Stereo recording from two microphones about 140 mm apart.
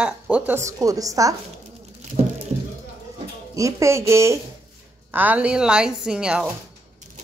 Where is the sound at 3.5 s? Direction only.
20° right (ahead or behind); by 6.5 s 5° right (ahead or behind).